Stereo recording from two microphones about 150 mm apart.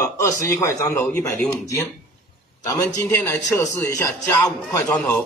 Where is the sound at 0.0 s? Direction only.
20° left (ahead or behind).